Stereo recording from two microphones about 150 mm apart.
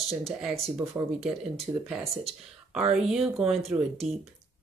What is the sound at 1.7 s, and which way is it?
Speech, 20° right (ahead or behind).